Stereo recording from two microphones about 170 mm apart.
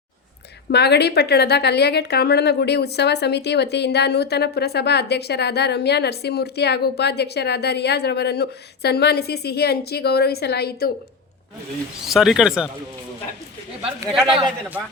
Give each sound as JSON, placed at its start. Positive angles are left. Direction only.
{"t": 0.7, "sound": "a woman's voice", "side_deg": 75}
{"t": 12.0, "sound": "speech", "side_deg": 0}